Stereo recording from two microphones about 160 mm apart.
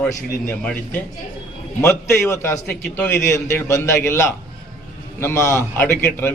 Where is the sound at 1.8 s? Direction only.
15° left (ahead or behind).